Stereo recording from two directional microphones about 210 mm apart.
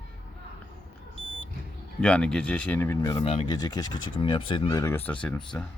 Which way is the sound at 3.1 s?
25° left (ahead or behind).